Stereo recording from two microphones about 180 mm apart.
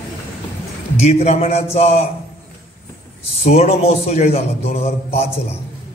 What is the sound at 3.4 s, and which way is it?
A man's voice, 35° left (ahead or behind).